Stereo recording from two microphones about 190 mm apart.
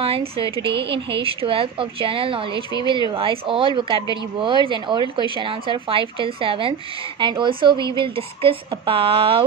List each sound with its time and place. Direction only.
0.0 s a woman's voice: 30° right (ahead or behind)